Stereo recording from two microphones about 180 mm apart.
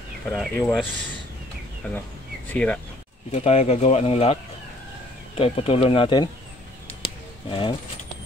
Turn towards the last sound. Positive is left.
turn(degrees=30)  # may be behind; listen again after turning